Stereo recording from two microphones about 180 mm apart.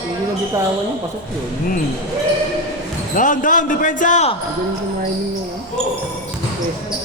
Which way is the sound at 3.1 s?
45° left (ahead or behind).